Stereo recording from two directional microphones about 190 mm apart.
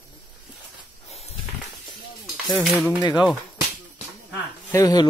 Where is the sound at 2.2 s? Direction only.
Centre (ahead or behind).